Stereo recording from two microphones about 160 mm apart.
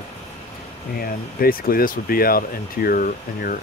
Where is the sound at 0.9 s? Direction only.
65° left (ahead or behind).